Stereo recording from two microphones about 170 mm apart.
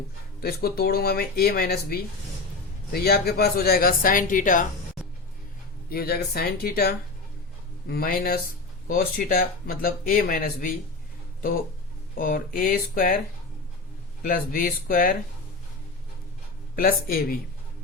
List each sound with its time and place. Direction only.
0.4 s speech: 65° left (ahead or behind)
5.9 s speech: 65° left (ahead or behind)
12.1 s speech: 55° left (ahead or behind)
14.2 s speech: 55° left (ahead or behind)
16.7 s speech: 60° left (ahead or behind)